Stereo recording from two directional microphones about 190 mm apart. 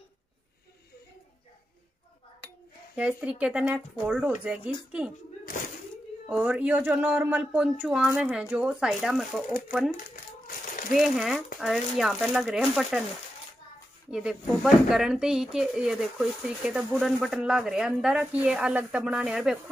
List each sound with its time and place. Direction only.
3.0 s speech: 5° right (ahead or behind)
6.2 s speech: 10° right (ahead or behind)
10.9 s speech: centre (ahead or behind)
14.1 s speech: centre (ahead or behind)